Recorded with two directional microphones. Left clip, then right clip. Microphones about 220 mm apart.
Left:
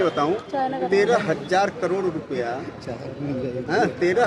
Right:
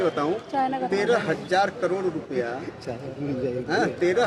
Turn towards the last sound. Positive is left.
turn(degrees=0)  # may be behind; listen again after turning